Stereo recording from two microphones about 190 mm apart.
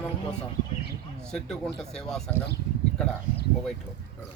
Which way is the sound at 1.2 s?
5° left (ahead or behind).